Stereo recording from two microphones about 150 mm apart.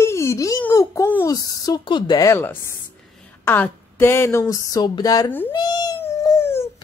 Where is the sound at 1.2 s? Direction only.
25° left (ahead or behind).